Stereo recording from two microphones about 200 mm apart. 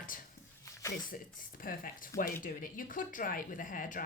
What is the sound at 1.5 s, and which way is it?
Speech, 45° left (ahead or behind).